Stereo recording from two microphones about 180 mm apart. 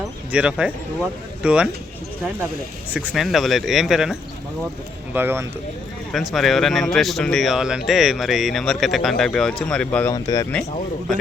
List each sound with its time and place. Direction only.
0.3 s speech: 5° right (ahead or behind)
2.9 s speech: 10° right (ahead or behind)
6.1 s speech: centre (ahead or behind)
10.1 s speech: 20° left (ahead or behind)